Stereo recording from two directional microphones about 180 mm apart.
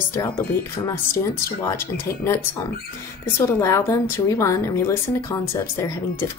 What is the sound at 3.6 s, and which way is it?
A woman's voice, 15° left (ahead or behind).